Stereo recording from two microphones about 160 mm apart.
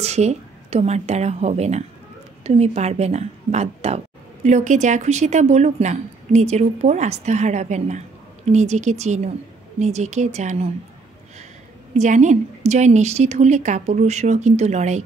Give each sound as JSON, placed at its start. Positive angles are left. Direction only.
{"t": 0.0, "sound": "a woman's voice", "side_deg": -45}
{"t": 12.0, "sound": "speech", "side_deg": -50}